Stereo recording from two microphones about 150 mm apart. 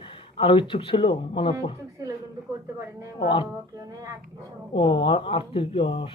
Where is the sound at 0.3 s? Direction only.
35° left (ahead or behind).